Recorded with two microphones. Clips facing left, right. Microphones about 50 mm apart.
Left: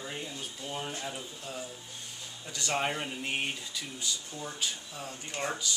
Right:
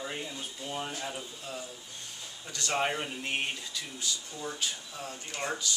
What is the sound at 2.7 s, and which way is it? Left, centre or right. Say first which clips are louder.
Speech: right 1 dB; centre.